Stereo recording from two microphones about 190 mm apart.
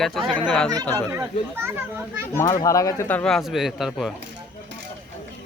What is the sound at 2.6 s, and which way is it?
Speech, 15° left (ahead or behind).